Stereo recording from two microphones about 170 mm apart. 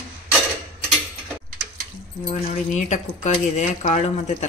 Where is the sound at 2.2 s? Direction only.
45° left (ahead or behind).